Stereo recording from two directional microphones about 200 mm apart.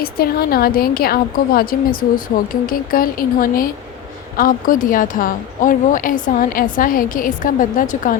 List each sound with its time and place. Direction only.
0.0 s speech: 50° left (ahead or behind)